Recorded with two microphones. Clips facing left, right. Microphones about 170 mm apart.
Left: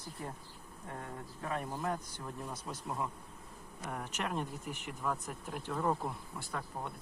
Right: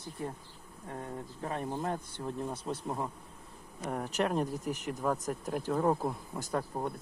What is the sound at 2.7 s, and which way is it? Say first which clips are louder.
Speech: right 7 dB; 35° right (ahead or behind).